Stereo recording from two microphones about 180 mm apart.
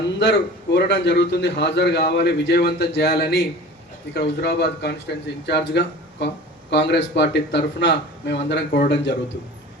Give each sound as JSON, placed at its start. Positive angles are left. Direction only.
{"t": 0.2, "sound": "speech", "side_deg": 75}